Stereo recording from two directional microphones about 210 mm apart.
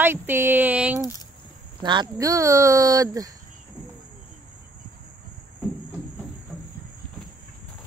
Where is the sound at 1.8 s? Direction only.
20° right (ahead or behind).